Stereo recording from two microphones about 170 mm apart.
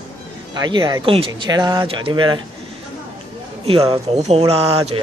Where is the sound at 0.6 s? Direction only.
25° right (ahead or behind).